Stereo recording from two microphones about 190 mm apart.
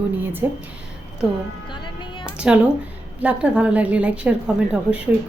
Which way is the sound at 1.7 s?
25° left (ahead or behind).